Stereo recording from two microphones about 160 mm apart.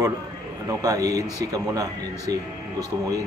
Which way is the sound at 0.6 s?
20° right (ahead or behind).